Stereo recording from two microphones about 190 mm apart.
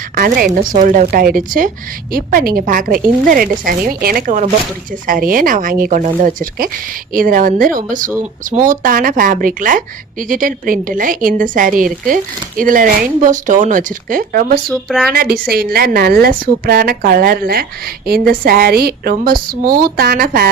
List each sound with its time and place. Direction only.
0.2 s speech: 50° right (ahead or behind)
14.7 s speech: centre (ahead or behind)
15.1 s speech: 50° right (ahead or behind)